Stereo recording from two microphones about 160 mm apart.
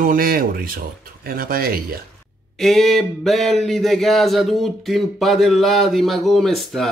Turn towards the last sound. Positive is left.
turn(degrees=0)  # may be behind; listen again after turning